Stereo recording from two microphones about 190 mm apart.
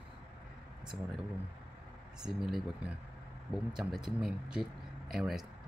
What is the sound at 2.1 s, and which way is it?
Speech, 5° right (ahead or behind).